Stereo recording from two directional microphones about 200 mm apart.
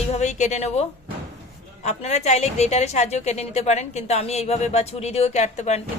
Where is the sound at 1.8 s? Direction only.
35° left (ahead or behind).